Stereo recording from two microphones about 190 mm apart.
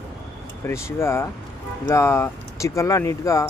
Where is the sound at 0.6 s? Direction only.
15° left (ahead or behind).